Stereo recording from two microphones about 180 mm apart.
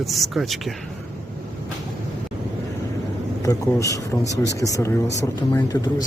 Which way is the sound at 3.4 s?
20° left (ahead or behind).